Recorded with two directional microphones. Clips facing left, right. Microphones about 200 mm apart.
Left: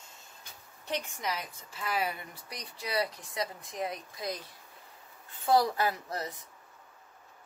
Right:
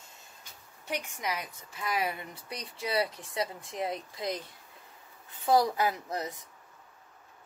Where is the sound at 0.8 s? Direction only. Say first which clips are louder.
Even; 10° right (ahead or behind).